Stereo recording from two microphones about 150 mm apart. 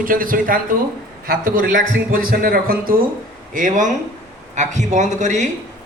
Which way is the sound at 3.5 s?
60° right (ahead or behind).